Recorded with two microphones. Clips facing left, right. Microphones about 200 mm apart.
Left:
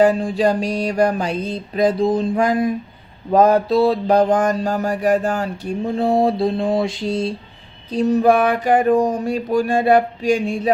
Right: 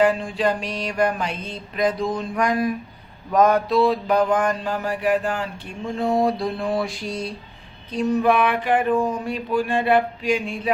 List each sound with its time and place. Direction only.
0.0 s mantra: 40° left (ahead or behind)